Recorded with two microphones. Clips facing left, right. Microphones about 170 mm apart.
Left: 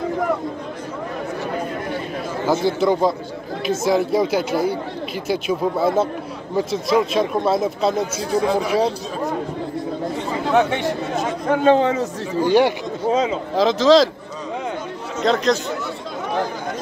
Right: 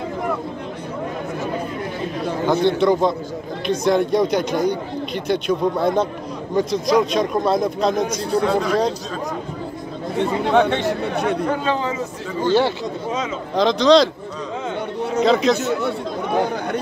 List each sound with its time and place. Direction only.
2.4 s speech: 5° left (ahead or behind)
10.5 s speech: 10° left (ahead or behind)
11.6 s a man's voice: 60° left (ahead or behind)
12.4 s speech: 15° left (ahead or behind)
13.1 s speech: 30° left (ahead or behind)
13.6 s speech: 5° left (ahead or behind)
15.2 s speech: centre (ahead or behind)